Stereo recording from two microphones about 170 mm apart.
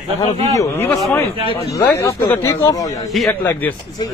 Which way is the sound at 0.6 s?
15° left (ahead or behind).